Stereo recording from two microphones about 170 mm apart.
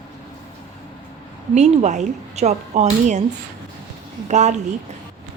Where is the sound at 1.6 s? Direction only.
45° right (ahead or behind).